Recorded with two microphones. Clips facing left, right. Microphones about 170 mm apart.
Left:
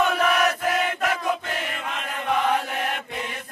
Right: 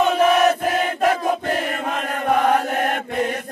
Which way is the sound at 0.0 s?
25° right (ahead or behind).